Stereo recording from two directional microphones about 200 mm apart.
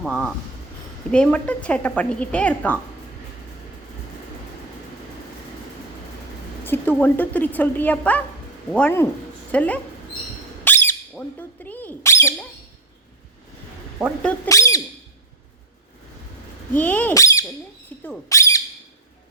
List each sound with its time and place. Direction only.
0.0 s a woman's voice: centre (ahead or behind)
6.7 s a woman's voice: 10° left (ahead or behind)
10.6 s a sound: 10° left (ahead or behind)
14.0 s speech: 5° left (ahead or behind)
14.4 s speech: 15° left (ahead or behind)
16.7 s a woman's voice: 10° left (ahead or behind)
18.0 s a sound: 10° left (ahead or behind)